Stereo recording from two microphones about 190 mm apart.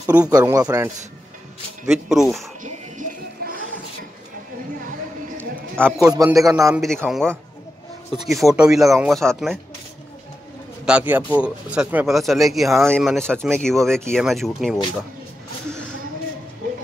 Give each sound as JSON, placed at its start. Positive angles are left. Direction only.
{"t": 0.0, "sound": "speech", "side_deg": -10}
{"t": 0.3, "sound": "speech", "side_deg": -20}
{"t": 1.9, "sound": "speech", "side_deg": -5}
{"t": 2.6, "sound": "music", "side_deg": -45}
{"t": 6.0, "sound": "a man's voice", "side_deg": -20}
{"t": 6.7, "sound": "speech", "side_deg": 0}
{"t": 8.4, "sound": "speech", "side_deg": 0}
{"t": 10.9, "sound": "speech", "side_deg": -10}